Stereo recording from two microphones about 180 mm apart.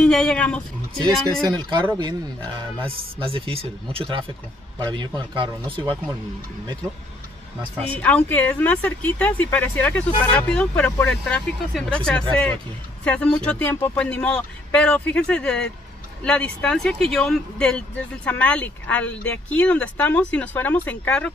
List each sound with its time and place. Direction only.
0.0 s speech: 5° left (ahead or behind)
1.6 s speech: 25° right (ahead or behind)
7.9 s speech: 10° left (ahead or behind)